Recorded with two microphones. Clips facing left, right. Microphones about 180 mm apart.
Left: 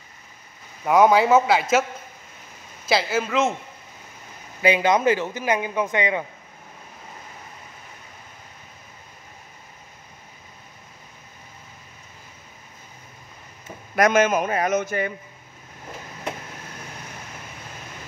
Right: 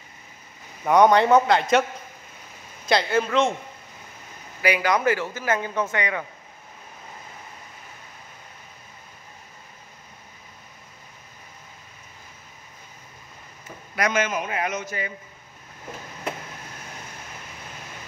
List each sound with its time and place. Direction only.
0.8 s speech: 5° left (ahead or behind)
2.9 s speech: 5° left (ahead or behind)
4.6 s a man's voice: 25° left (ahead or behind)
13.9 s a man's voice: 45° left (ahead or behind)